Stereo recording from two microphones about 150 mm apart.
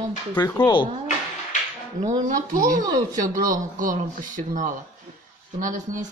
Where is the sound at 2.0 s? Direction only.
60° right (ahead or behind).